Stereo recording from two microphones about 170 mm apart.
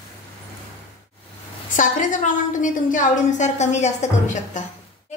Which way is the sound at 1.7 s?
50° left (ahead or behind).